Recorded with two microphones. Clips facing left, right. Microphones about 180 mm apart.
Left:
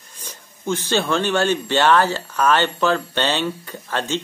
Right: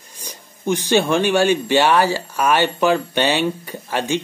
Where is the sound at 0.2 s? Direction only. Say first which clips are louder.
Right 4 dB; 15° right (ahead or behind).